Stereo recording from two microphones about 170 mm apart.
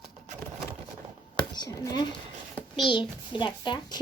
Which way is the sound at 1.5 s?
25° left (ahead or behind).